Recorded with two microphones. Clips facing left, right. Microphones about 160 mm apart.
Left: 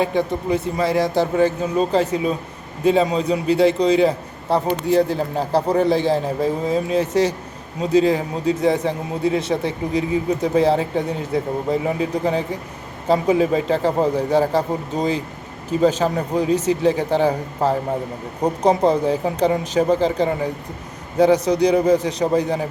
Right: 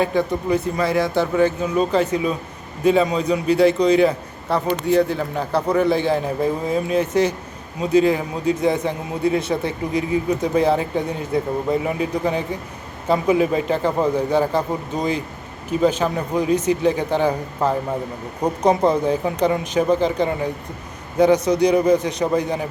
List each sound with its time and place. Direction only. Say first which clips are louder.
0.0 s a man's voice: even; 25° left (ahead or behind)